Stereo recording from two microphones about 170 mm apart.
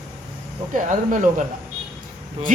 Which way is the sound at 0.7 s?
50° right (ahead or behind).